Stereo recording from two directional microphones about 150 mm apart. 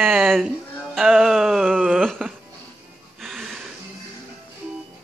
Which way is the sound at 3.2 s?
Centre (ahead or behind).